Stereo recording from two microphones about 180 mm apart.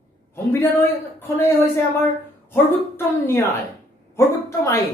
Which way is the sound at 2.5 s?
15° left (ahead or behind).